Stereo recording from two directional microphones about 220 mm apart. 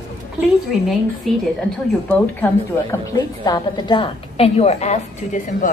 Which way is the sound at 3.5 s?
20° left (ahead or behind).